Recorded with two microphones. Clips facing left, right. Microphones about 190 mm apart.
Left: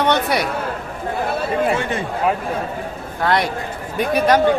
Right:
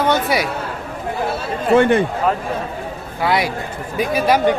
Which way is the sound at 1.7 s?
60° right (ahead or behind).